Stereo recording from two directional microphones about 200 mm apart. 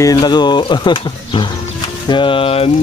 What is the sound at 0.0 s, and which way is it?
Speech, 20° left (ahead or behind).